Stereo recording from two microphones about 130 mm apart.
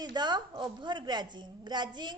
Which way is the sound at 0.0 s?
35° right (ahead or behind).